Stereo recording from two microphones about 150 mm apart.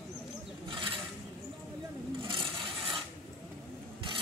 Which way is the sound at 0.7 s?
35° right (ahead or behind).